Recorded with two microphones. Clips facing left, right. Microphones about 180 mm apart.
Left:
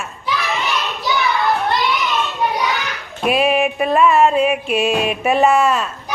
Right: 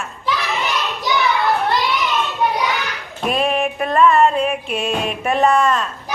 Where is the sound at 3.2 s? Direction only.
5° left (ahead or behind).